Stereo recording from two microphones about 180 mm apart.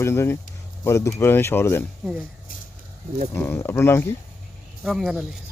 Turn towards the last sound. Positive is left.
turn(degrees=0)  # may be behind; listen again after turning